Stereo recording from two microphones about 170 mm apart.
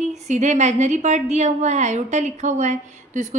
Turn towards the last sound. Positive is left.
turn(degrees=-45)  # may be behind; listen again after turning